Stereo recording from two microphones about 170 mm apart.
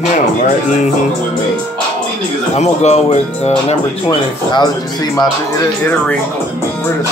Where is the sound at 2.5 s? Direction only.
40° left (ahead or behind).